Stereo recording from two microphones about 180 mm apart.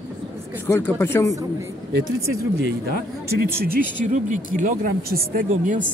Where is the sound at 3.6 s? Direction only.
45° right (ahead or behind).